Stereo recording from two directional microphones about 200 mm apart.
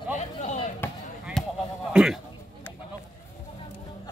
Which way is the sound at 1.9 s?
5° right (ahead or behind).